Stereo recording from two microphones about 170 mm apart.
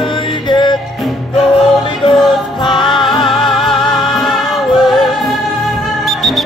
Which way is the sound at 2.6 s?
25° left (ahead or behind).